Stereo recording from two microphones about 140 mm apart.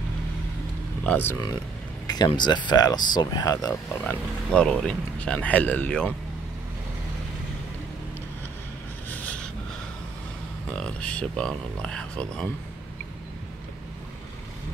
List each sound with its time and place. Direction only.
1.0 s speech: 15° left (ahead or behind)
2.0 s speech: 30° left (ahead or behind)
4.0 s speech: 10° left (ahead or behind)
9.1 s a sound: 10° left (ahead or behind)
10.7 s speech: 5° left (ahead or behind)